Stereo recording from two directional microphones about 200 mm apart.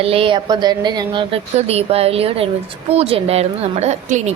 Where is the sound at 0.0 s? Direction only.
30° right (ahead or behind).